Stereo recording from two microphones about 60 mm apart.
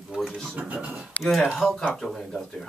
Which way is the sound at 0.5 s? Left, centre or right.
Right.